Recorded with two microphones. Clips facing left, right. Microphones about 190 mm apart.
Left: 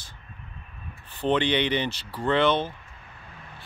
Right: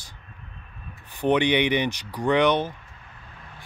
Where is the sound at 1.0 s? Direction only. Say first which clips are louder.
Right 3 dB; 15° right (ahead or behind).